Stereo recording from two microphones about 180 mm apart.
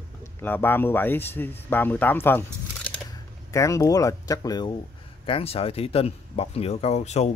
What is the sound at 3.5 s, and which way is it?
Speech, 15° left (ahead or behind).